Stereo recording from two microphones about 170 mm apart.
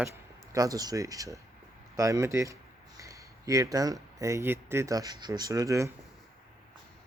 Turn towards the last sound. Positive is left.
turn(degrees=-20)  # may be behind; listen again after turning